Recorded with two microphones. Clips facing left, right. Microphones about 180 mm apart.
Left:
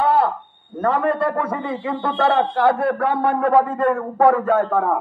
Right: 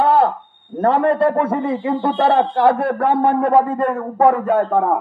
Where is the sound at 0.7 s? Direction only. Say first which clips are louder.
Right 4 dB; 30° right (ahead or behind).